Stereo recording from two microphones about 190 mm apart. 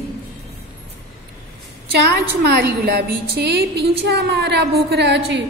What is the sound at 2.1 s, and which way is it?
A woman's voice, 60° right (ahead or behind).